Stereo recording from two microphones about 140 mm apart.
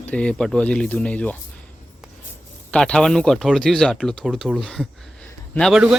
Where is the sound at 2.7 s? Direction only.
5° left (ahead or behind).